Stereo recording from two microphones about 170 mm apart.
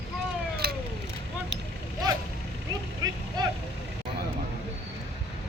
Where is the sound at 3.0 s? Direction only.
20° right (ahead or behind).